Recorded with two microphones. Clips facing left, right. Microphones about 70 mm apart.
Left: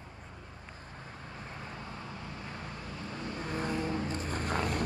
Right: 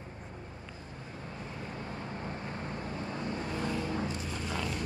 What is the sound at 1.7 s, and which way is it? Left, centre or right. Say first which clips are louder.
Vehicle: right 3 dB; right.